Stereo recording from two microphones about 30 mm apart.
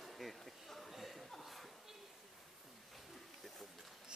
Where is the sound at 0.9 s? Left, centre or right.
Centre.